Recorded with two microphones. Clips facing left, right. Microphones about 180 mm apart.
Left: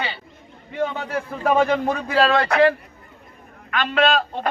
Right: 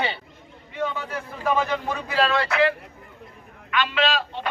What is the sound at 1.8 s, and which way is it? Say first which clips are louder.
Speech: left 5 dB; 50° left (ahead or behind).